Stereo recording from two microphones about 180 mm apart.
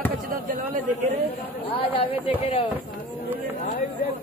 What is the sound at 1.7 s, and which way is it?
Speech, 30° left (ahead or behind).